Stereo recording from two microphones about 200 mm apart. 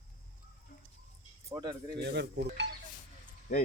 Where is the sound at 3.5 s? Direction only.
40° left (ahead or behind).